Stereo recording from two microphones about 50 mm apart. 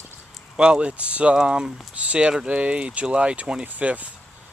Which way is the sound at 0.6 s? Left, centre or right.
Centre.